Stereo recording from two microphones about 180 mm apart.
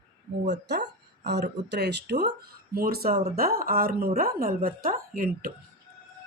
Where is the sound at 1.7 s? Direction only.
70° right (ahead or behind).